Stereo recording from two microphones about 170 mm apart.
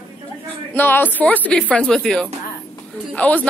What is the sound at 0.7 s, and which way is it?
Speech, 10° left (ahead or behind).